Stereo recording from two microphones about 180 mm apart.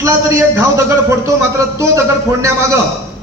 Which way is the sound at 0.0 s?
15° right (ahead or behind).